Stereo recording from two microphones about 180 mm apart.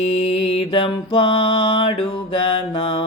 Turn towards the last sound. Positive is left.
turn(degrees=30)  # may be behind; listen again after turning